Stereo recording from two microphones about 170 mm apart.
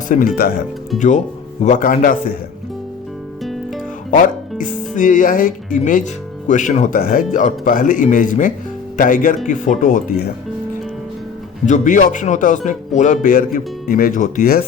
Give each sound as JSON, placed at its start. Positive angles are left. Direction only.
{"t": 0.1, "sound": "speech", "side_deg": 45}
{"t": 4.1, "sound": "speech", "side_deg": 50}
{"t": 11.6, "sound": "speech", "side_deg": 45}